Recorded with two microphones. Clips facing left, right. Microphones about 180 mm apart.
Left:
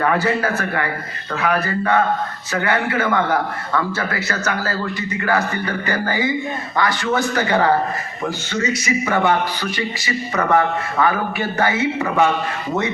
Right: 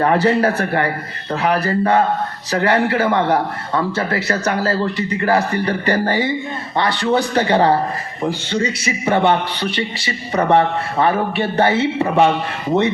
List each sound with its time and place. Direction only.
0.0 s a man's voice: 30° right (ahead or behind)